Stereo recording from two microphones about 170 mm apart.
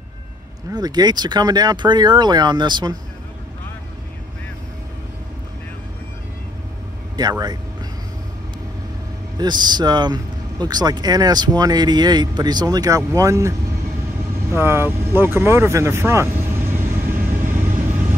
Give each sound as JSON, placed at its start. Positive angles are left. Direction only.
{"t": 0.7, "sound": "speech", "side_deg": -25}
{"t": 7.2, "sound": "speech", "side_deg": -25}
{"t": 9.4, "sound": "speech", "side_deg": -25}
{"t": 14.5, "sound": "vehicle", "side_deg": -15}